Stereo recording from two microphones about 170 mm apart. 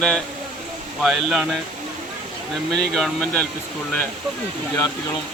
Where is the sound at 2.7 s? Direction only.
Centre (ahead or behind).